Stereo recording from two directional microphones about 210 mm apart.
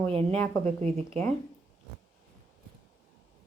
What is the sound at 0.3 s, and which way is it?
Speech, 10° left (ahead or behind).